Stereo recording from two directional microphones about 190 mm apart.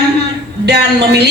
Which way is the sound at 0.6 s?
60° right (ahead or behind).